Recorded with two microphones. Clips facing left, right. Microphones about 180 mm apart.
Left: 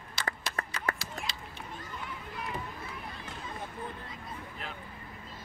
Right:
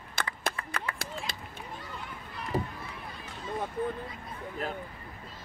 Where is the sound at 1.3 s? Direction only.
50° right (ahead or behind).